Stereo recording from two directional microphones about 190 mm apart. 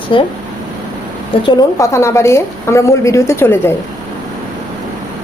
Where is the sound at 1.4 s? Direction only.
20° left (ahead or behind).